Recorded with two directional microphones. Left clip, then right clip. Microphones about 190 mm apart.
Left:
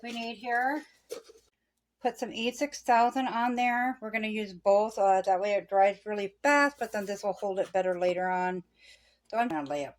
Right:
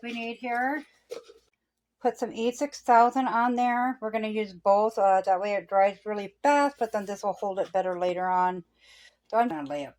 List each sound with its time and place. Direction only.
0.0 s a woman's voice: 25° right (ahead or behind)
2.0 s a woman's voice: 25° right (ahead or behind)